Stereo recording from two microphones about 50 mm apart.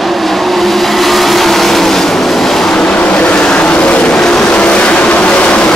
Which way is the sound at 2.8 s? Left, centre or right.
Left.